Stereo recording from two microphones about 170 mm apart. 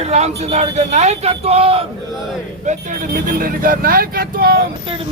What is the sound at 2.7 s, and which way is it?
Speech, 50° right (ahead or behind).